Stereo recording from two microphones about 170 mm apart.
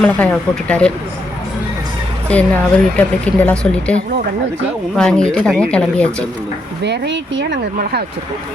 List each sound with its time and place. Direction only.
0.0 s speech: 5° left (ahead or behind)
2.2 s speech: 5° left (ahead or behind)
6.8 s speech: 85° right